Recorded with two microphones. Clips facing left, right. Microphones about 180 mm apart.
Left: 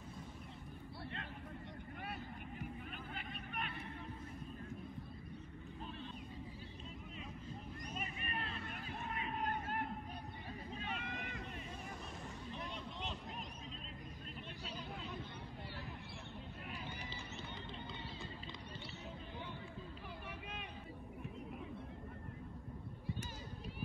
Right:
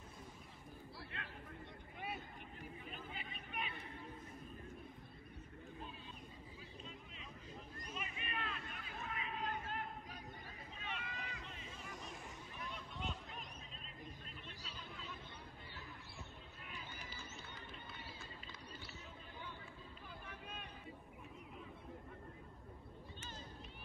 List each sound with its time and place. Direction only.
2.9 s vehicle: centre (ahead or behind)
7.9 s vehicle: 40° left (ahead or behind)
10.8 s run: 45° left (ahead or behind)